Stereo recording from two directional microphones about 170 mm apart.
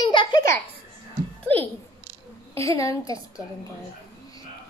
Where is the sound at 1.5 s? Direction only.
10° left (ahead or behind).